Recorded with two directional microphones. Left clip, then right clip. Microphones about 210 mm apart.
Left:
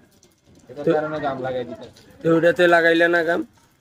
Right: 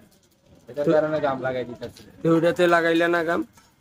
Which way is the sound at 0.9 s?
20° right (ahead or behind).